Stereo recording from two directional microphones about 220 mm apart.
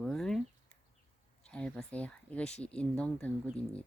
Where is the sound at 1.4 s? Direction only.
5° left (ahead or behind).